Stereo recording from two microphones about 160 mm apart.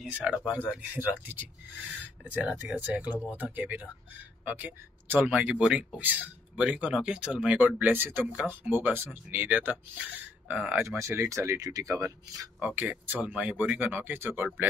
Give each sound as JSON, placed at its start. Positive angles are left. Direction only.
{"t": 0.0, "sound": "speech", "side_deg": -5}
{"t": 13.0, "sound": "speech", "side_deg": -10}